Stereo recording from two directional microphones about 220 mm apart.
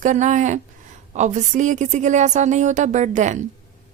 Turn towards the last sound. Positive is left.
turn(degrees=-35)  # may be behind; listen again after turning